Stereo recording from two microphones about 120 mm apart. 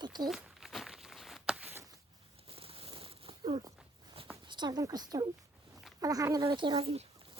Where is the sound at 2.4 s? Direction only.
50° right (ahead or behind).